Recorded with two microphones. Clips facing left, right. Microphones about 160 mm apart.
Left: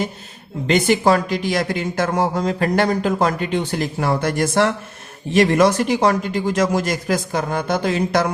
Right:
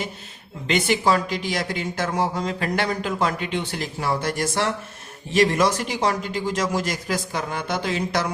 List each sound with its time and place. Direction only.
0.7 s speech: 45° left (ahead or behind)